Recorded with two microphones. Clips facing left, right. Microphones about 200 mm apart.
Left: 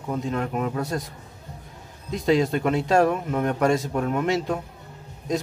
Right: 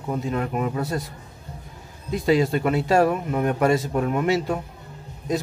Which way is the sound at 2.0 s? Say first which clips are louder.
Right 1 dB; 5° right (ahead or behind).